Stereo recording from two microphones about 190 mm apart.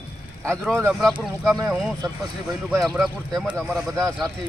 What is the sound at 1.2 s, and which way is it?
Speech, 5° left (ahead or behind).